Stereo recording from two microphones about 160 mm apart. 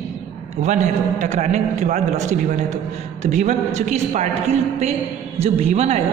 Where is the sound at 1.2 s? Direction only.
45° right (ahead or behind).